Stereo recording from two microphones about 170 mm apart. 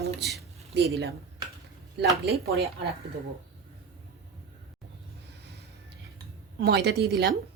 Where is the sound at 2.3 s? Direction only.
70° right (ahead or behind).